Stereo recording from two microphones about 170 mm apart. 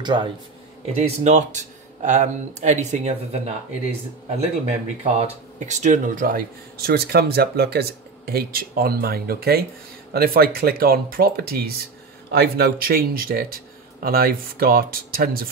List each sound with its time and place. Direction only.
0.0 s a man's voice: 25° right (ahead or behind)
0.9 s speech: 45° right (ahead or behind)
4.6 s speech: 40° right (ahead or behind); by 15.4 s 60° right (ahead or behind)